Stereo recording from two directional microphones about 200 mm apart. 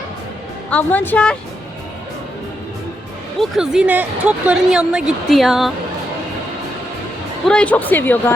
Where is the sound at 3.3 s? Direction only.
Centre (ahead or behind).